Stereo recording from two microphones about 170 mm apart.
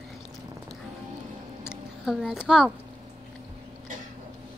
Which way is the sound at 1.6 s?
5° right (ahead or behind).